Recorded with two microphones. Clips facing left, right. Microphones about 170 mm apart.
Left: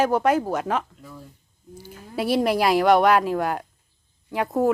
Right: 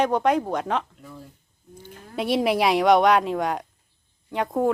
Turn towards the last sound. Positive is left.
turn(degrees=5)  # may be behind; listen again after turning